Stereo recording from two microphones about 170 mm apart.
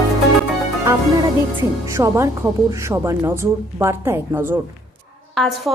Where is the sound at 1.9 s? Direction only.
15° right (ahead or behind).